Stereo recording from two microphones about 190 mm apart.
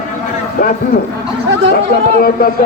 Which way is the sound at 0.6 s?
45° left (ahead or behind).